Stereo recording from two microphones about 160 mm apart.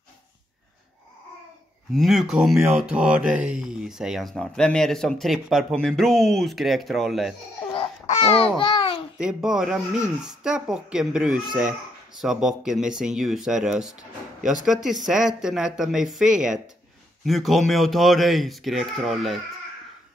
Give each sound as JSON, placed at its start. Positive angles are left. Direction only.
{"t": 2.0, "sound": "speech", "side_deg": 0}
{"t": 7.7, "sound": "babbling", "side_deg": 40}
{"t": 9.2, "sound": "speech", "side_deg": -5}